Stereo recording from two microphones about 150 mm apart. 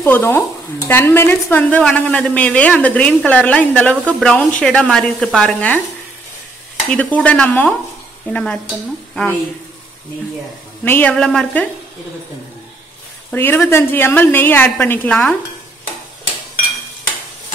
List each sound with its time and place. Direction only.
0.0 s speech: 15° left (ahead or behind)
6.9 s speech: 10° left (ahead or behind)
10.8 s speech: 10° left (ahead or behind)
13.3 s speech: 15° left (ahead or behind)